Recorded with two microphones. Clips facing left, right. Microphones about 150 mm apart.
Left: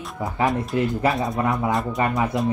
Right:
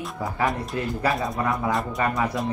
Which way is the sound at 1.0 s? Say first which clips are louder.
Left 3 dB; 20° left (ahead or behind).